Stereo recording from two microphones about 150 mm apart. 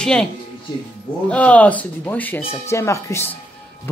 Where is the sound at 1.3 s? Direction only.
10° left (ahead or behind).